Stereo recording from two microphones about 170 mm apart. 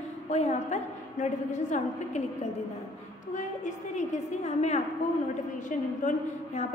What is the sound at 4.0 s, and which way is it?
Speech, 40° left (ahead or behind).